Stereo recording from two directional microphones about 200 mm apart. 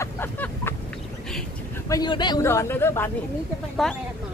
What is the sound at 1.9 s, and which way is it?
Speech, 20° left (ahead or behind).